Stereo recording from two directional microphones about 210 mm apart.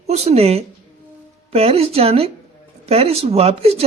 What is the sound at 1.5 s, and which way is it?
Speech, 30° right (ahead or behind).